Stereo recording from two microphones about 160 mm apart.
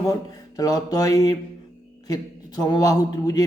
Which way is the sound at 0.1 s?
25° left (ahead or behind).